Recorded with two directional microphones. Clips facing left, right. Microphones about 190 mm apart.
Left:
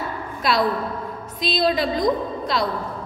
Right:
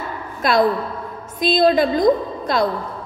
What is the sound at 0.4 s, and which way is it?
A woman's voice, 50° right (ahead or behind).